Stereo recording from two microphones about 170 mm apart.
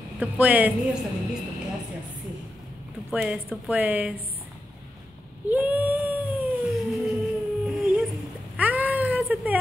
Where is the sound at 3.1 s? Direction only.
10° right (ahead or behind).